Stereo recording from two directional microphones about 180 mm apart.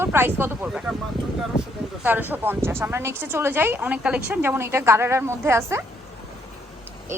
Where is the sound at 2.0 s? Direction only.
10° right (ahead or behind).